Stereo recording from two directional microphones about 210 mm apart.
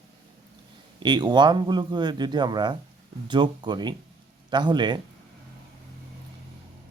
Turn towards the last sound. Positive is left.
turn(degrees=-20)  # may be behind; listen again after turning